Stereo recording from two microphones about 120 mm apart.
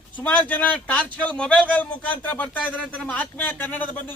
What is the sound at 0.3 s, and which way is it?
A man's voice, 10° left (ahead or behind).